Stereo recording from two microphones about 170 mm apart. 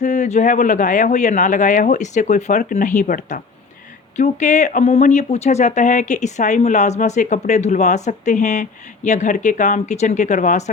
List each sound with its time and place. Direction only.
0.0 s speech: 45° left (ahead or behind)